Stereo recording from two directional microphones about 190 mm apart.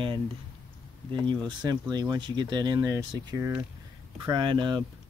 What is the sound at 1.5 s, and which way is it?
Speech, 20° right (ahead or behind).